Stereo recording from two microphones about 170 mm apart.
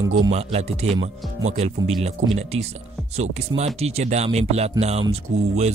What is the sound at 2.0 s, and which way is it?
Speech, 40° right (ahead or behind).